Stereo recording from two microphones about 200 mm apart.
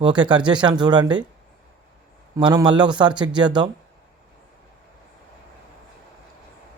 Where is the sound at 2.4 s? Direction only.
25° right (ahead or behind).